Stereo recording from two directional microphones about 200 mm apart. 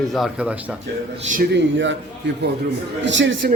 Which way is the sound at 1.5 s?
65° right (ahead or behind).